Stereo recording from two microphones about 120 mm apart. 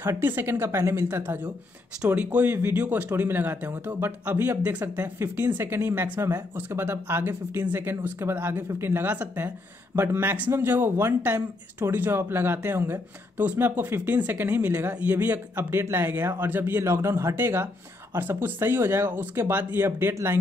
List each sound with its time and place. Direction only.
0.0 s speech: 20° right (ahead or behind)